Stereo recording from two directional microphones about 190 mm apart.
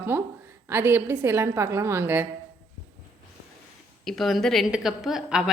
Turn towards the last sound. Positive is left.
turn(degrees=-5)  # may be behind; listen again after turning